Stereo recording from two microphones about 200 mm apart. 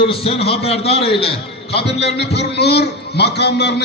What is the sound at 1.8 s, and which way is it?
A man's voice, 55° left (ahead or behind).